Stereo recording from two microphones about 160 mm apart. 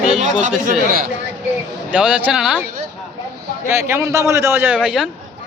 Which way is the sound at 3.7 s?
15° right (ahead or behind).